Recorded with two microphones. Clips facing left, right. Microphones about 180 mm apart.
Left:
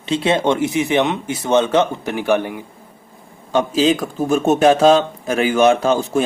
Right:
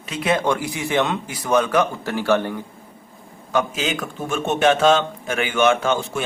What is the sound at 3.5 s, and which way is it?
Speech, 30° left (ahead or behind).